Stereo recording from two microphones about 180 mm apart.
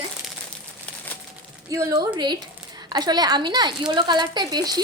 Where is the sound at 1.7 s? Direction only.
20° right (ahead or behind).